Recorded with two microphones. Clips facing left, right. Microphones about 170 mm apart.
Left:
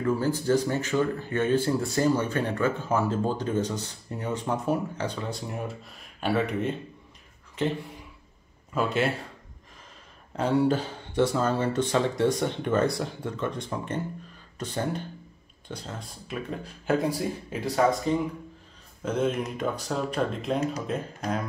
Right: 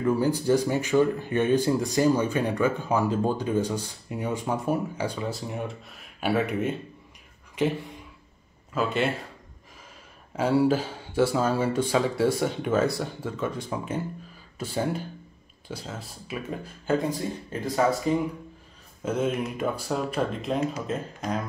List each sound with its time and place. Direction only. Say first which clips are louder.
0.0 s speech: right 2 dB; 15° right (ahead or behind)
8.7 s speech: even; centre (ahead or behind)
10.3 s speech: right 2 dB; 5° right (ahead or behind)